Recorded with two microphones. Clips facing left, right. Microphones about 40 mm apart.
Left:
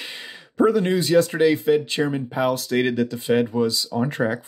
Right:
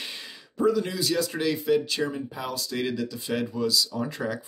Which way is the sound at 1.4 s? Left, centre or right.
Left.